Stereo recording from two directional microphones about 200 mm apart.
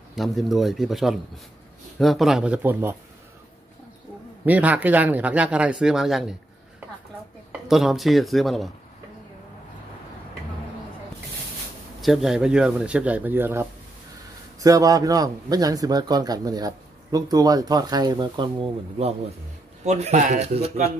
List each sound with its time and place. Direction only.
0.1 s speech: centre (ahead or behind)
4.5 s speech: 5° right (ahead or behind)
7.6 s speech: centre (ahead or behind)
12.0 s speech: centre (ahead or behind); by 20.9 s 30° right (ahead or behind)